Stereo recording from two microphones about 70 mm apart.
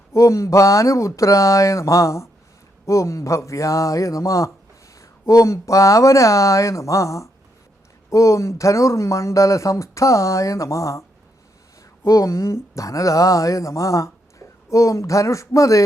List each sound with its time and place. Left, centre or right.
0.1 s speech: left
12.0 s speech: left